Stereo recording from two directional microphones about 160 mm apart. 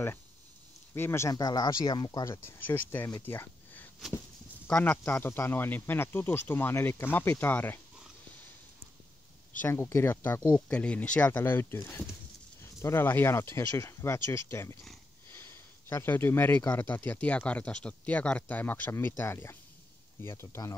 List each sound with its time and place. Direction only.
0.9 s speech: 15° left (ahead or behind)
9.6 s speech: 15° left (ahead or behind)